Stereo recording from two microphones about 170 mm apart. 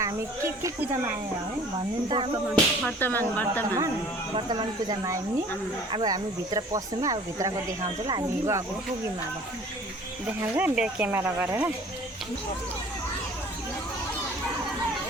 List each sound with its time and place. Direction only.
0.0 s speech: 15° right (ahead or behind)
2.0 s speech: 30° right (ahead or behind)
2.8 s speech: 10° left (ahead or behind)
4.4 s speech: 25° right (ahead or behind)
10.2 s speech: 10° right (ahead or behind)